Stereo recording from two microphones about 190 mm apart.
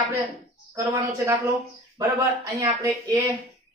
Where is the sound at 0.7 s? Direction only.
15° right (ahead or behind).